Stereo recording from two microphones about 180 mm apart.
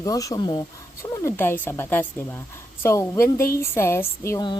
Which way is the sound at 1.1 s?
15° left (ahead or behind).